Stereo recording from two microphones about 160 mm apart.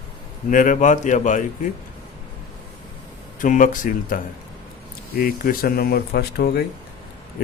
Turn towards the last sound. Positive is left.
turn(degrees=75)  # may be behind; listen again after turning